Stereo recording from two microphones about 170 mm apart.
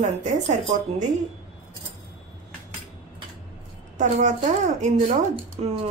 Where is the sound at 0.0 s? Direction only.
45° right (ahead or behind).